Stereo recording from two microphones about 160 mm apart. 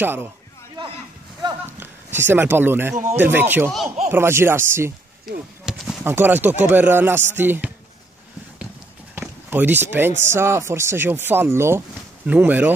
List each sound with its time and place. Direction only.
0.0 s speech: 15° right (ahead or behind)
1.8 s speech: 15° right (ahead or behind)
5.3 s speech: centre (ahead or behind)
9.1 s chop: 10° right (ahead or behind)
10.2 s speech: 15° right (ahead or behind)